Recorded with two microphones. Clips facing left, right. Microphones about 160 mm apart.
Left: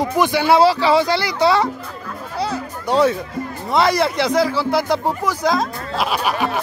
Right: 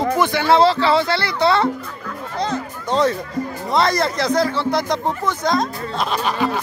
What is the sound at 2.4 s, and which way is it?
Music, 10° left (ahead or behind).